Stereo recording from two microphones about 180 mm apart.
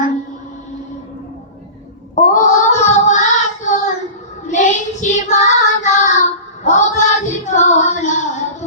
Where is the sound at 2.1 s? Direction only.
40° left (ahead or behind).